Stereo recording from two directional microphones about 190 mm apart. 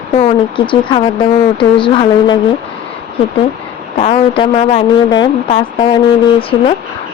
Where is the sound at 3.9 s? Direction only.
30° left (ahead or behind).